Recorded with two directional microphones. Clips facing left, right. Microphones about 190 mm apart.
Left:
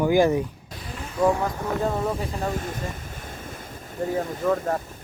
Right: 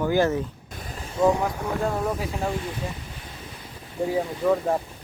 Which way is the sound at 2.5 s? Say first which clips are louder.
Even; 45° left (ahead or behind).